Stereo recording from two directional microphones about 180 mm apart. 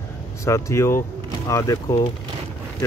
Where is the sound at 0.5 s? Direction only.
15° left (ahead or behind).